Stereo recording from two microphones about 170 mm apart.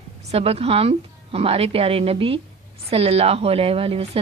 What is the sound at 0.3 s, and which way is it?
A woman's voice, 35° right (ahead or behind).